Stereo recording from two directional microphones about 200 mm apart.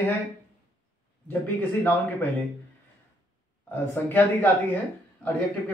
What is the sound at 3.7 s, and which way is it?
Speech, 10° left (ahead or behind).